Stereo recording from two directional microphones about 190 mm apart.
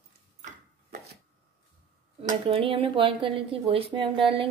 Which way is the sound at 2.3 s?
30° right (ahead or behind).